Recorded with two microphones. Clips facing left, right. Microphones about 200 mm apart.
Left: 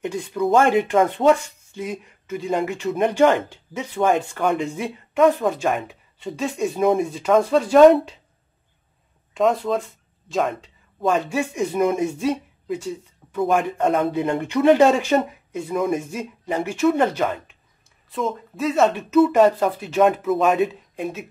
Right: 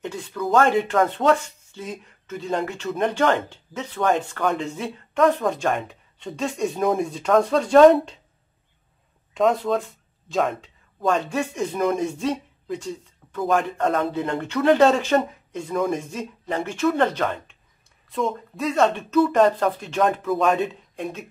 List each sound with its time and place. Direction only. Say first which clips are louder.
0.0 s speech: left 5 dB; 15° left (ahead or behind)
9.3 s speech: even; centre (ahead or behind)
13.7 s speech: left 3 dB; 20° left (ahead or behind)